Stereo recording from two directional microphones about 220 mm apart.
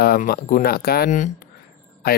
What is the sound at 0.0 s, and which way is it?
Speech, 45° left (ahead or behind).